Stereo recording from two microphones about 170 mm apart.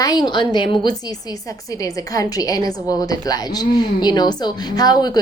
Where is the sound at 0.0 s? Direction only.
25° left (ahead or behind).